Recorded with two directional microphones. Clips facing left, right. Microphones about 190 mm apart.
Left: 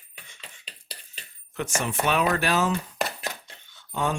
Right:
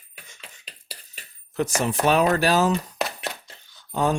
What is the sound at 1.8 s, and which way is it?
Speech, 35° right (ahead or behind).